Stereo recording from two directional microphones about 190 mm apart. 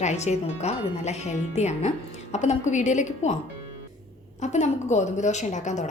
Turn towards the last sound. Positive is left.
turn(degrees=40)  # may be behind; listen again after turning